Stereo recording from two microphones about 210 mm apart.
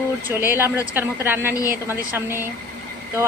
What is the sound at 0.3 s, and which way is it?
Speech, 10° right (ahead or behind).